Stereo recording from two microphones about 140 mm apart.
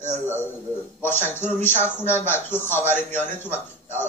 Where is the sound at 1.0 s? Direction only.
15° left (ahead or behind).